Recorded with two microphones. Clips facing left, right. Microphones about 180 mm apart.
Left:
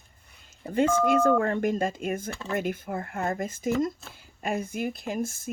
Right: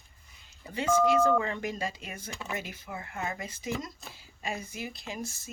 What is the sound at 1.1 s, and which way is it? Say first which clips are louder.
Speech: left 3 dB; 55° left (ahead or behind).